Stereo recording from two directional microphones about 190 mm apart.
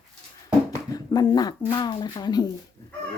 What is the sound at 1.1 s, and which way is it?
Speech, 20° left (ahead or behind).